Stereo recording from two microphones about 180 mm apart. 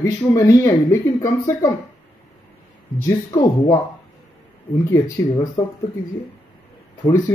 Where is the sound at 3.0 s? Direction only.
20° left (ahead or behind).